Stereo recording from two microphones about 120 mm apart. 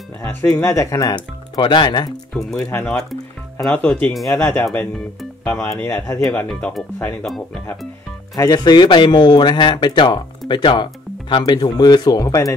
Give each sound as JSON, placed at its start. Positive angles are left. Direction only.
{"t": 0.2, "sound": "a sound", "side_deg": 20}
{"t": 0.6, "sound": "speech", "side_deg": 20}
{"t": 2.6, "sound": "speech", "side_deg": 20}
{"t": 7.2, "sound": "speech", "side_deg": 0}
{"t": 8.4, "sound": "speech", "side_deg": 35}